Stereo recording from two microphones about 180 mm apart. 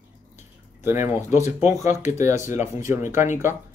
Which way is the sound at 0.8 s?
15° right (ahead or behind).